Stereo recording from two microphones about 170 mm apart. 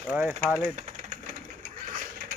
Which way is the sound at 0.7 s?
50° right (ahead or behind).